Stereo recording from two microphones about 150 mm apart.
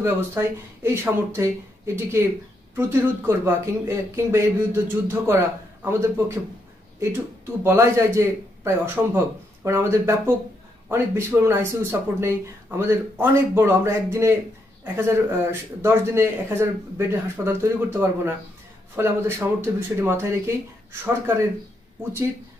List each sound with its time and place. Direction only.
0.0 s speech: 15° right (ahead or behind)